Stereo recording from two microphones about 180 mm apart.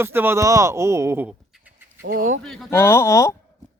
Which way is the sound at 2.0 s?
50° right (ahead or behind).